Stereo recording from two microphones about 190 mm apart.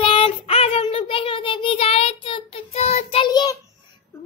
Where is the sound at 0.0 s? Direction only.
30° left (ahead or behind).